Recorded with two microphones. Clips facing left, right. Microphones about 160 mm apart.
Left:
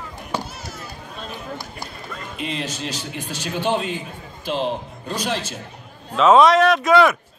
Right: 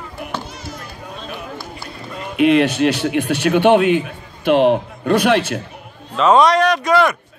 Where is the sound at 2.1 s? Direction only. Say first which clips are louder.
Right 16 dB; 65° right (ahead or behind).